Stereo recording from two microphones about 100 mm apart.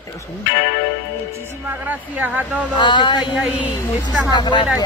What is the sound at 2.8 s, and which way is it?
Speech, 50° left (ahead or behind).